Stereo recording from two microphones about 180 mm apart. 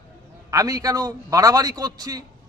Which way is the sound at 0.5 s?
20° right (ahead or behind).